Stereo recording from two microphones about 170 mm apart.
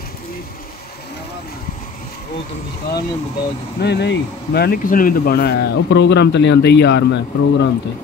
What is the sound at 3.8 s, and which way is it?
Speech, 80° left.